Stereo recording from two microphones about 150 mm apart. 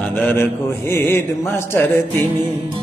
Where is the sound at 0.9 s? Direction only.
15° left (ahead or behind).